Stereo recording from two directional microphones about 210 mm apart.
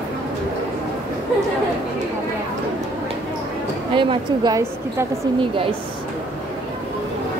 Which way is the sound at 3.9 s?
25° right (ahead or behind).